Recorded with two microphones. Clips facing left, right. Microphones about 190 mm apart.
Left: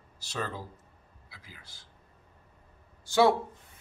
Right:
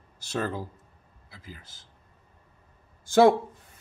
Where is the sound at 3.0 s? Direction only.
50° right (ahead or behind).